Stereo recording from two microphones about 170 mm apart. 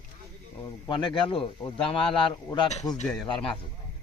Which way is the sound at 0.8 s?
30° left (ahead or behind).